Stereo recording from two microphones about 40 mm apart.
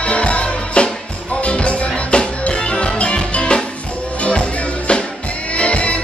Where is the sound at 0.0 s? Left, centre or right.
Left.